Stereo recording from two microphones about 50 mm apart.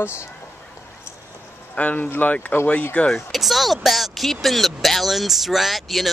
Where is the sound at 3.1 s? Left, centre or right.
Centre.